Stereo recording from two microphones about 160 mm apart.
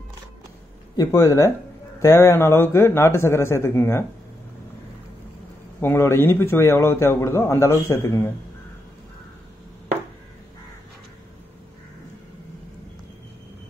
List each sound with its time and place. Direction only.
0.9 s a man's voice: 20° left (ahead or behind)
5.8 s a man's voice: 15° left (ahead or behind)